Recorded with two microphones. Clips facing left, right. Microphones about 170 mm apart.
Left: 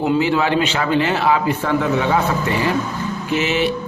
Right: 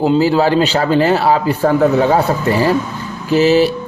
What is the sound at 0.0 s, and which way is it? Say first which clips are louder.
A man's voice: right 5 dB; 35° right (ahead or behind).